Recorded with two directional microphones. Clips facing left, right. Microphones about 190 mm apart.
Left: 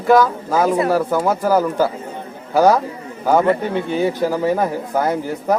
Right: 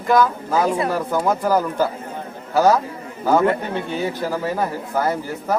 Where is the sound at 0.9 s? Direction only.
10° left (ahead or behind).